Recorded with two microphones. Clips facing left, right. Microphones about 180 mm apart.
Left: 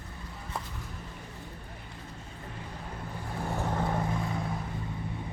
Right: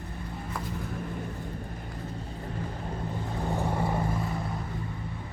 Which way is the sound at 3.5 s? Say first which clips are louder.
Right 1 dB; 15° right (ahead or behind).